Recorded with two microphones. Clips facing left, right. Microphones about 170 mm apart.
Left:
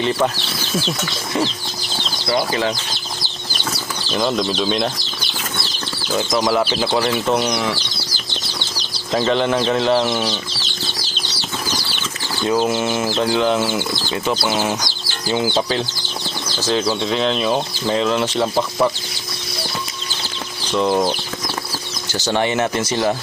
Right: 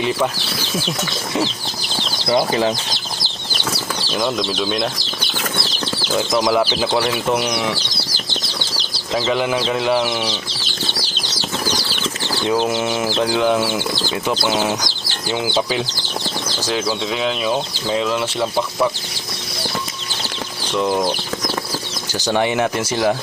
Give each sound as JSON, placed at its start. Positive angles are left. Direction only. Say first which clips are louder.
{"t": 0.9, "sound": "speech", "louder": "even", "side_deg": -15}
{"t": 4.2, "sound": "speech", "louder": "left 2 dB", "side_deg": 0}
{"t": 6.1, "sound": "speech", "louder": "even", "side_deg": -5}
{"t": 9.1, "sound": "speech", "louder": "left 2 dB", "side_deg": -5}
{"t": 12.5, "sound": "speech", "louder": "left 1 dB", "side_deg": -15}
{"t": 20.7, "sound": "speech", "louder": "left 1 dB", "side_deg": 0}
{"t": 22.2, "sound": "speech", "louder": "right 1 dB", "side_deg": -15}